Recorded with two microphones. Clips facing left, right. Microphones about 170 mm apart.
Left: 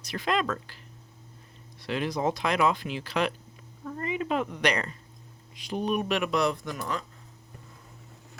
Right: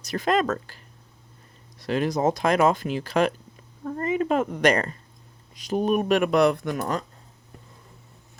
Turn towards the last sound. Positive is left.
turn(degrees=-45)  # may be behind; listen again after turning